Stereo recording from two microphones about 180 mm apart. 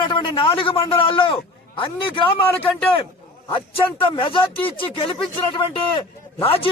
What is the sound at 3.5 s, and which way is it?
A man's voice, 30° left (ahead or behind).